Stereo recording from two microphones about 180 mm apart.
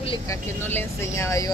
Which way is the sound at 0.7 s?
15° left (ahead or behind).